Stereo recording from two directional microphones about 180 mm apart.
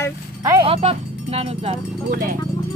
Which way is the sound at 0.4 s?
20° right (ahead or behind).